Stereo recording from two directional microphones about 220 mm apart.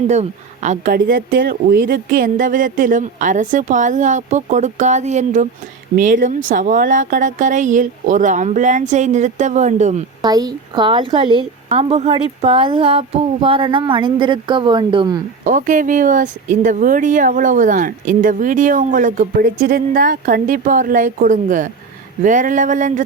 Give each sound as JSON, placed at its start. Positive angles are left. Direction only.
{"t": 0.1, "sound": "speech", "side_deg": -30}
{"t": 10.2, "sound": "a woman's voice", "side_deg": -15}
{"t": 15.4, "sound": "speech", "side_deg": -35}